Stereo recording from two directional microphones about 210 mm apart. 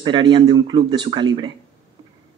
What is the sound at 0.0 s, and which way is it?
A man's voice, 20° right (ahead or behind).